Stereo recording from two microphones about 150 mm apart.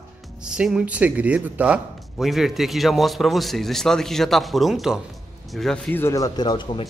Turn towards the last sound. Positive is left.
turn(degrees=30)  # may be behind; listen again after turning